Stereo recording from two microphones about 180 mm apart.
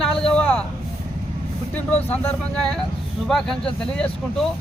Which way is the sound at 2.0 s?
5° left (ahead or behind).